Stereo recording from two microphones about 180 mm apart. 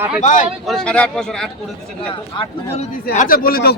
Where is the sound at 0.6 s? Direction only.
5° left (ahead or behind).